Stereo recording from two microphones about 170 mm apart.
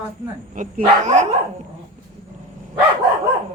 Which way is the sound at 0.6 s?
45° right (ahead or behind).